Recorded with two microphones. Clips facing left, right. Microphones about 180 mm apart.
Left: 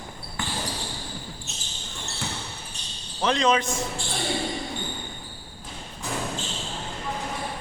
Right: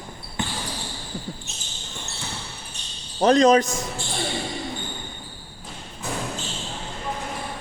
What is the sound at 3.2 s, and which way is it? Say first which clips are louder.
Speech: right 7 dB; 40° right (ahead or behind).